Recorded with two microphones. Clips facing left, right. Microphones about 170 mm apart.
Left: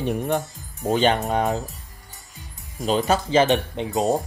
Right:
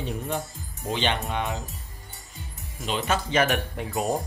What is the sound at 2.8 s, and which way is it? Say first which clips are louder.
Speech: left 6 dB; 35° left (ahead or behind).